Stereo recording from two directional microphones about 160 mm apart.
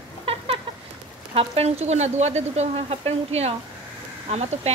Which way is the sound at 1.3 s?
35° right (ahead or behind).